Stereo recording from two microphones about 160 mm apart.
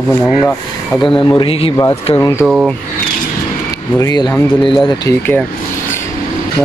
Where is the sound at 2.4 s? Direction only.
5° right (ahead or behind).